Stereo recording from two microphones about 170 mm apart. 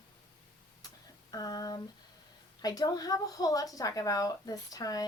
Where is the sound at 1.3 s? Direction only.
20° left (ahead or behind).